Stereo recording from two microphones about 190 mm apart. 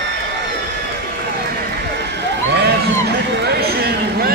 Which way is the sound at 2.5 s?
60° right (ahead or behind).